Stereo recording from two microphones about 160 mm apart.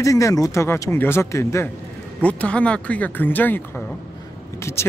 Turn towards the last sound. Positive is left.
turn(degrees=15)  # may be behind; listen again after turning